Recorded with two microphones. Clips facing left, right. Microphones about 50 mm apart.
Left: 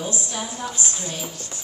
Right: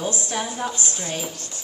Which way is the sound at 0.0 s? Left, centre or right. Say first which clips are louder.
Right 3 dB; right.